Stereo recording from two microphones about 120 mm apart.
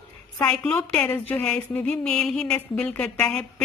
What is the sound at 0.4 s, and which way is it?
A woman's voice, 10° left (ahead or behind).